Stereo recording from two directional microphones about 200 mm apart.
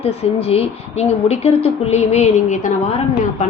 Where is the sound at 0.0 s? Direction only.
30° left (ahead or behind).